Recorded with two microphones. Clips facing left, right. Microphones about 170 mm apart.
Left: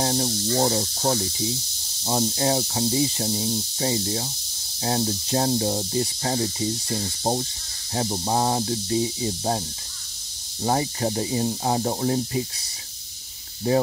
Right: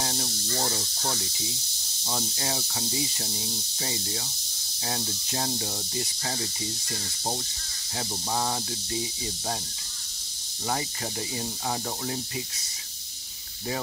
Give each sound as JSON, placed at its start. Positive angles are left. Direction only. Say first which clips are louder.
{"t": 0.0, "sound": "snake", "louder": "left 9 dB", "side_deg": 35}
{"t": 2.0, "sound": "speech", "louder": "left 10 dB", "side_deg": 35}
{"t": 10.6, "sound": "speech", "louder": "left 8 dB", "side_deg": 35}